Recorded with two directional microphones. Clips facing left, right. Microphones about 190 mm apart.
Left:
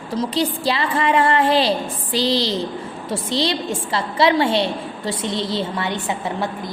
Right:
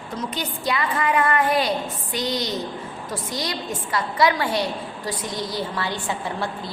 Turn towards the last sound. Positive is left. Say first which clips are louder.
# left 3 dB
turn(degrees=20)  # may be behind; listen again after turning